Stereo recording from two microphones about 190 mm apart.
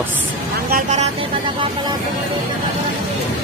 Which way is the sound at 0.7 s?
45° right (ahead or behind).